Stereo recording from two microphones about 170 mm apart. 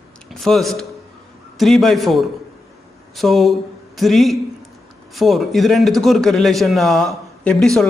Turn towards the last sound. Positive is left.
turn(degrees=0)  # may be behind; listen again after turning